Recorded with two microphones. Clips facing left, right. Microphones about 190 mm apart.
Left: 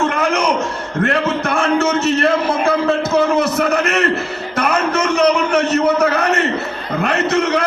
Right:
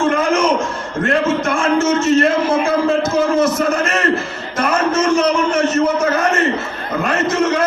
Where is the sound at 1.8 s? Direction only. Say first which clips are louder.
Right 2 dB; 65° left (ahead or behind).